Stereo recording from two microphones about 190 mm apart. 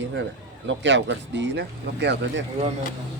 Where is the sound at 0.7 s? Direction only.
70° right (ahead or behind).